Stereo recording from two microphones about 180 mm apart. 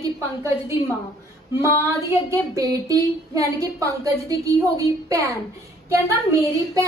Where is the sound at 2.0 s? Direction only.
20° right (ahead or behind).